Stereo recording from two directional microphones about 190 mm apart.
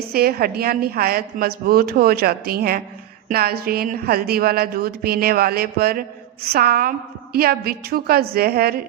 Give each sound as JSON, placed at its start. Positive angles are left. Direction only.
{"t": 0.0, "sound": "speech", "side_deg": -55}